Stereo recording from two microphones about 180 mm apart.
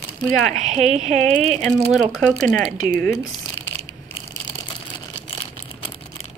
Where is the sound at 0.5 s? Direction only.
40° right (ahead or behind).